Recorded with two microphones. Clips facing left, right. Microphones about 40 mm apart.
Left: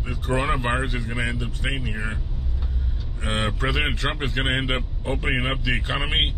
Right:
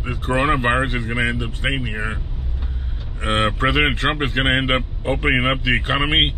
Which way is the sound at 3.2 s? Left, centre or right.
Right.